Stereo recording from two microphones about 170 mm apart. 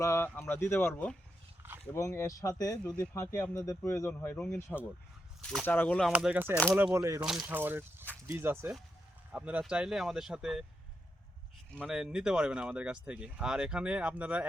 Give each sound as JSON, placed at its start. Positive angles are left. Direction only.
{"t": 0.0, "sound": "speech", "side_deg": 15}
{"t": 5.6, "sound": "speech", "side_deg": 10}
{"t": 6.1, "sound": "speech", "side_deg": -5}
{"t": 7.2, "sound": "speech", "side_deg": -5}
{"t": 11.8, "sound": "speech", "side_deg": -5}